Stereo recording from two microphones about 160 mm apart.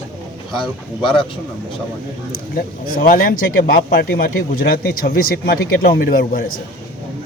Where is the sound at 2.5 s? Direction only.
65° left (ahead or behind).